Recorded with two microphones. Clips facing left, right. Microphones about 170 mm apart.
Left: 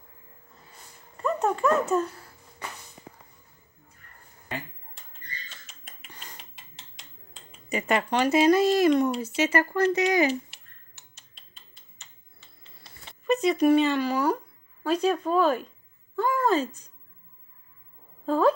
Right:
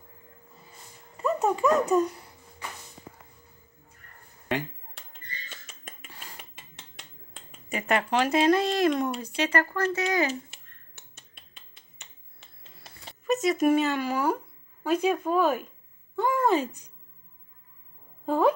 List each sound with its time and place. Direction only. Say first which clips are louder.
1.1 s speech: right 1 dB; 5° right (ahead or behind)
4.5 s finger snapping: right 7 dB; 75° right (ahead or behind)
6.0 s cutlery: left 1 dB; 5° right (ahead or behind)
6.5 s a sound: right 3 dB; 55° right (ahead or behind)
7.7 s speech: left 1 dB; centre (ahead or behind); by 10.3 s 15° left (ahead or behind)
11.0 s finger snapping: right 6 dB; 60° right (ahead or behind)
13.6 s speech: left 2 dB; 5° right (ahead or behind)
16.2 s a sound: even; 20° right (ahead or behind)
18.2 s a woman's voice: left 1 dB; 15° right (ahead or behind)